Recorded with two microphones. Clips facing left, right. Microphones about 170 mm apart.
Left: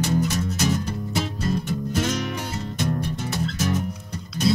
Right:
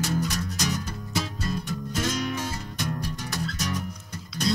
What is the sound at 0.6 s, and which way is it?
Music, 25° left (ahead or behind).